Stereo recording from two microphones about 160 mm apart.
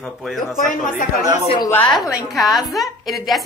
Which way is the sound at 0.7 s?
60° left (ahead or behind).